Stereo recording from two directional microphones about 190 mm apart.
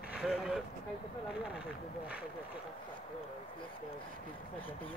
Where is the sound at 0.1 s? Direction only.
Centre (ahead or behind).